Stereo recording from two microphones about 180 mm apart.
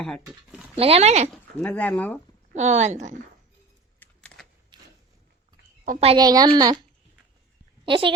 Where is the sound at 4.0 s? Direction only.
5° left (ahead or behind).